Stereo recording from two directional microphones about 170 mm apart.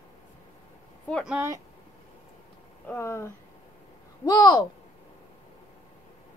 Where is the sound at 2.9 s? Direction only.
15° left (ahead or behind).